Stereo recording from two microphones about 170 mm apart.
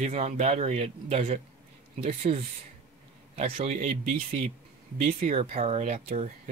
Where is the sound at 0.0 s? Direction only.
40° right (ahead or behind).